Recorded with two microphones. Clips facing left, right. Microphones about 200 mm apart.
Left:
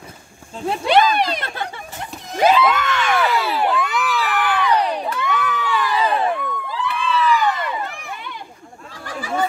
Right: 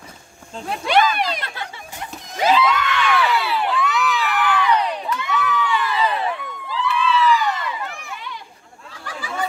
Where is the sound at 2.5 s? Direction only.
50° left (ahead or behind); by 4.9 s 35° left (ahead or behind).